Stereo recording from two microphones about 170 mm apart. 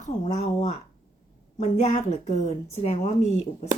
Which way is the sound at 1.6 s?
45° left (ahead or behind).